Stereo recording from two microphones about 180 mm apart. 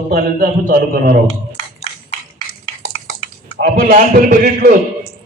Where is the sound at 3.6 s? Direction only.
45° right (ahead or behind).